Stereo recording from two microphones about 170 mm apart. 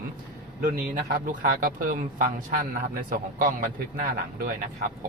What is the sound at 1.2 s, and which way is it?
Speech, 55° right (ahead or behind).